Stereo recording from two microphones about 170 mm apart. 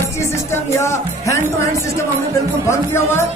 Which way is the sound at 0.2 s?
15° left (ahead or behind).